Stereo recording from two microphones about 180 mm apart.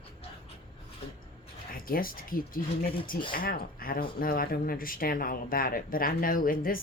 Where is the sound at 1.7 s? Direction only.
55° left (ahead or behind).